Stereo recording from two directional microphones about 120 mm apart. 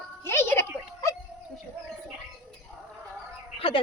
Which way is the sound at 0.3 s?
20° left (ahead or behind).